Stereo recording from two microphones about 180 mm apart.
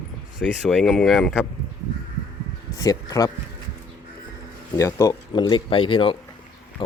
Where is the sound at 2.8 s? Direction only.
20° left (ahead or behind).